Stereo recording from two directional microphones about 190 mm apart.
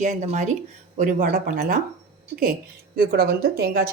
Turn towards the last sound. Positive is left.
turn(degrees=-55)  # may be behind; listen again after turning